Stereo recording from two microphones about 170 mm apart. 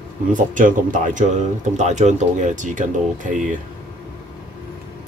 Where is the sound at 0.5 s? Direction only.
50° right (ahead or behind).